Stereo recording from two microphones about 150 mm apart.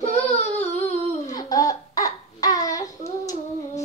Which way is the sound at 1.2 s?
25° left (ahead or behind).